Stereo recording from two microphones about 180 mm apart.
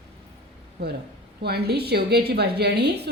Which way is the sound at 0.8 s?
60° right (ahead or behind).